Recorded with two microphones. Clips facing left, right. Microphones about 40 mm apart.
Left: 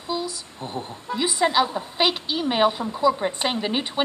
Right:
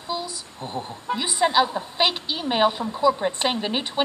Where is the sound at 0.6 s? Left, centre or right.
Right.